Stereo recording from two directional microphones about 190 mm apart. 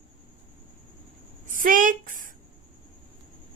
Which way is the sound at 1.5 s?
45° right (ahead or behind).